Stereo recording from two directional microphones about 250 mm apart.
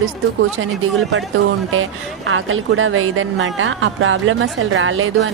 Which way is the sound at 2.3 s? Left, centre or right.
Right.